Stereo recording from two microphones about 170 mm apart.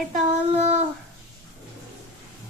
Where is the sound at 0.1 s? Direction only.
45° right (ahead or behind).